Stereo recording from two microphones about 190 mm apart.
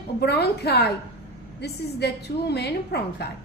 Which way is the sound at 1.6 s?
60° left (ahead or behind).